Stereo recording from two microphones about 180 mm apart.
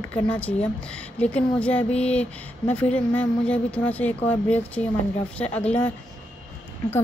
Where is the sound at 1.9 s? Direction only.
35° left (ahead or behind).